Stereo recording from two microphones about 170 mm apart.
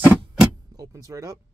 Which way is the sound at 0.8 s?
20° right (ahead or behind).